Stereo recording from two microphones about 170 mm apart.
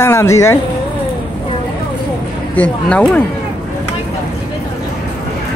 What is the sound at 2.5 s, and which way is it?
Speech, 10° left (ahead or behind).